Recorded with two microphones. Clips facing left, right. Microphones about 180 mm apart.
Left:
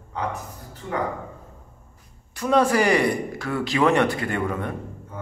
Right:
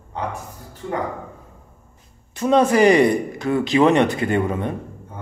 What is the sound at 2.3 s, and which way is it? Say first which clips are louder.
Speech: right 4 dB; 20° right (ahead or behind).